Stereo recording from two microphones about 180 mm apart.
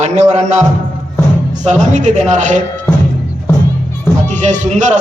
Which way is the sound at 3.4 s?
10° left (ahead or behind).